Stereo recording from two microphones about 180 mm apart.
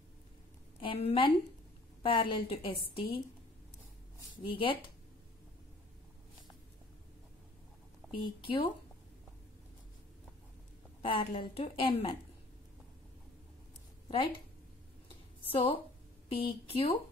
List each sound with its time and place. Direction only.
0.7 s a woman's voice: 30° left (ahead or behind)
4.5 s a woman's voice: 30° left (ahead or behind)
8.1 s a woman's voice: 30° left (ahead or behind)
11.0 s a woman's voice: 30° left (ahead or behind)
15.4 s a woman's voice: 30° left (ahead or behind)